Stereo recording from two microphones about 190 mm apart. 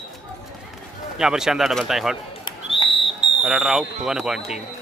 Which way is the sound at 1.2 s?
5° right (ahead or behind).